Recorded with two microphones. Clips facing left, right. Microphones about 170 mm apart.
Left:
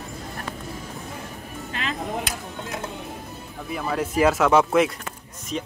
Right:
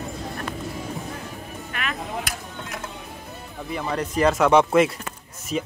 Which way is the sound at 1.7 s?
25° left (ahead or behind).